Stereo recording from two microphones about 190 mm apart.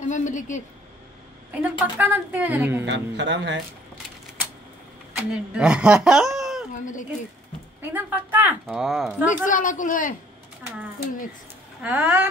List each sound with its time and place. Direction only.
0.1 s a woman's voice: 40° left (ahead or behind)
1.6 s a woman's voice: 10° right (ahead or behind)
2.8 s speech: 65° right (ahead or behind)
5.1 s speech: 5° right (ahead or behind)
6.7 s speech: 40° left (ahead or behind)
7.8 s a woman's voice: 10° right (ahead or behind)
9.5 s a man's voice: 45° left (ahead or behind)
11.8 s a woman's voice: 10° right (ahead or behind)